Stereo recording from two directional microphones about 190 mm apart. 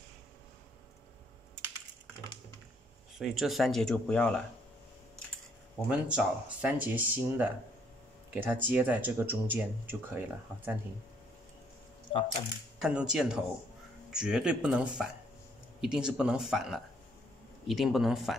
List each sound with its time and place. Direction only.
3.2 s speech: centre (ahead or behind)
5.9 s speech: 5° right (ahead or behind)
12.1 s speech: 30° left (ahead or behind)
12.8 s speech: 5° right (ahead or behind)